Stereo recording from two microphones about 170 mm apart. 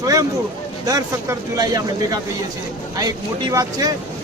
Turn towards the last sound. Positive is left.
turn(degrees=-20)  # may be behind; listen again after turning